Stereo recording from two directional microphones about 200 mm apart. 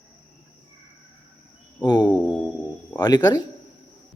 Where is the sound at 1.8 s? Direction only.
20° left (ahead or behind).